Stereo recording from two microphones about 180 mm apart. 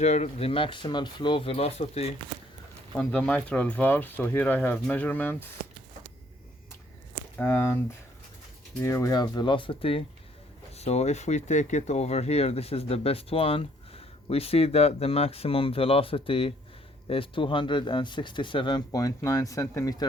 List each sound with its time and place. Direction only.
0.0 s speech: 40° left (ahead or behind)
2.9 s speech: 5° left (ahead or behind)
7.3 s speech: 10° left (ahead or behind)
8.8 s speech: 15° left (ahead or behind)